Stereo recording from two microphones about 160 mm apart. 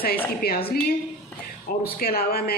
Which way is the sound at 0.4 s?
75° left (ahead or behind).